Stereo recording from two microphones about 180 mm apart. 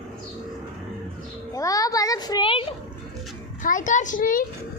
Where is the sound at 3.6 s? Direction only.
45° left (ahead or behind).